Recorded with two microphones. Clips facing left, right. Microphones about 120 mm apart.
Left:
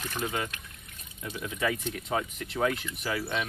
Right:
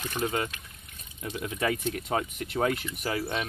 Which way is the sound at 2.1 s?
45° right (ahead or behind).